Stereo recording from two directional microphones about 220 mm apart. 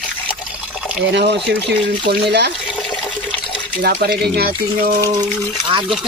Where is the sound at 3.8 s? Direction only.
45° right (ahead or behind).